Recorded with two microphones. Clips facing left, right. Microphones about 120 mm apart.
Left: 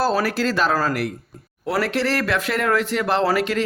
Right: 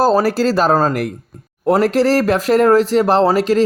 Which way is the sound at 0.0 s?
40° right (ahead or behind).